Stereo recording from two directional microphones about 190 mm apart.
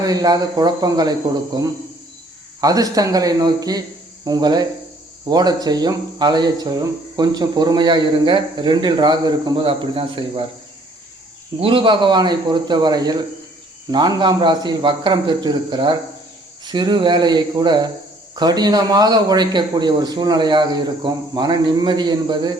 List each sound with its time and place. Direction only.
0.0 s speech: 20° right (ahead or behind)
2.6 s speech: 20° right (ahead or behind)
11.6 s speech: 25° right (ahead or behind)